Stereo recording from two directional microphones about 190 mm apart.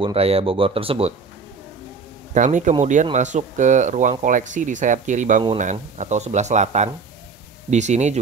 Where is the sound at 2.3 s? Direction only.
40° right (ahead or behind).